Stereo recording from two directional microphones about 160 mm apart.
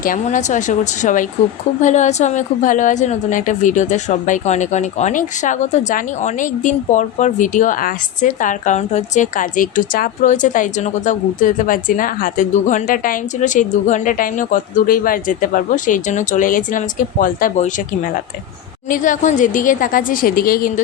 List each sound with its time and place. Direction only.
0.0 s a woman's voice: 55° left (ahead or behind)